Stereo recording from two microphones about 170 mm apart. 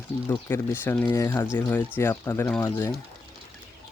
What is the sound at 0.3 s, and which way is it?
Speech, 15° left (ahead or behind).